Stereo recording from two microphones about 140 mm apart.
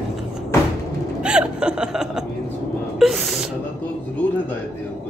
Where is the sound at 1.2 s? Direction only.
5° right (ahead or behind).